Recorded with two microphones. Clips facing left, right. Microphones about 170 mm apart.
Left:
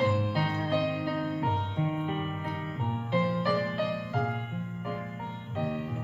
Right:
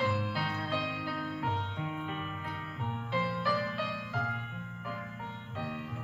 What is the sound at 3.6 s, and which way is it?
Music, 40° left (ahead or behind).